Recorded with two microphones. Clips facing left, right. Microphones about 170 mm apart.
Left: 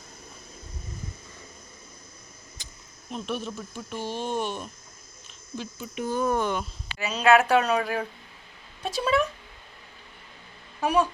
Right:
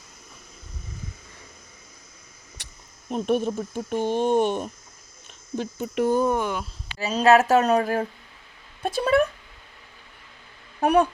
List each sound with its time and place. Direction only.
2.6 s a sound: 70° right (ahead or behind)
3.1 s speech: 50° right (ahead or behind)
6.3 s speech: 10° right (ahead or behind)
7.1 s speech: 40° right (ahead or behind)
8.8 s speech: 55° right (ahead or behind)
10.8 s speech: 60° right (ahead or behind)